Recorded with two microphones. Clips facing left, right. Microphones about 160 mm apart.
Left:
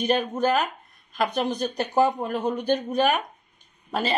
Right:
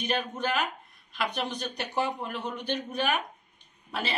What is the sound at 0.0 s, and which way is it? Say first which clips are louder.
A woman's voice: left 7 dB; 40° left (ahead or behind).